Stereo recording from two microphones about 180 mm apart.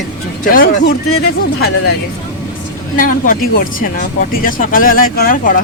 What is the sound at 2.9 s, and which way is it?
Speech, 50° left (ahead or behind).